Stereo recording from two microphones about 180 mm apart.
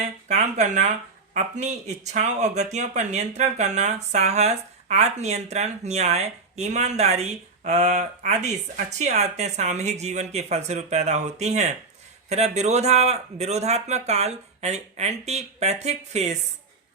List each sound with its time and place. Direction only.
0.0 s speech: 40° right (ahead or behind)